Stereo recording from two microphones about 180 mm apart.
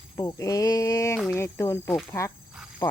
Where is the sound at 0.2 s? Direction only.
20° left (ahead or behind).